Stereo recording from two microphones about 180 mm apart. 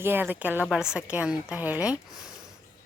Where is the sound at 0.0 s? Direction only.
10° right (ahead or behind).